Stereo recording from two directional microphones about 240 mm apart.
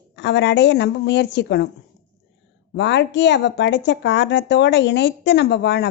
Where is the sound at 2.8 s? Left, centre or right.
Left.